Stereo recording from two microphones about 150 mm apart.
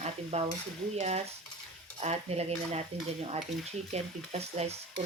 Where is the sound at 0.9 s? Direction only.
45° right (ahead or behind).